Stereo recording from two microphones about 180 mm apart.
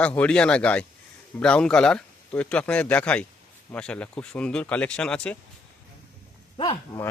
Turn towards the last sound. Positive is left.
turn(degrees=30)  # may be behind; listen again after turning